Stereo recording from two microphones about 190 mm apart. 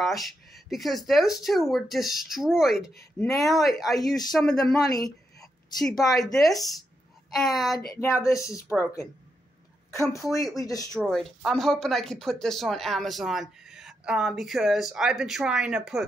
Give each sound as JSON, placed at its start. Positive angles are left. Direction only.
{"t": 0.0, "sound": "speech", "side_deg": 0}
{"t": 4.8, "sound": "speech", "side_deg": 20}
{"t": 6.1, "sound": "speech", "side_deg": 0}
{"t": 7.9, "sound": "speech", "side_deg": 15}
{"t": 10.2, "sound": "speech", "side_deg": 15}
{"t": 11.0, "sound": "speech", "side_deg": 0}